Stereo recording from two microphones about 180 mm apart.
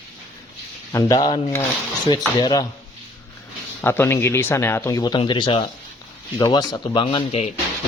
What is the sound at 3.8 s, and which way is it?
A man's voice, 15° left (ahead or behind).